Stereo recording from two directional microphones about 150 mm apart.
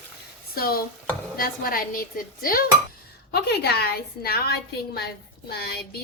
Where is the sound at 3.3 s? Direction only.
90° left.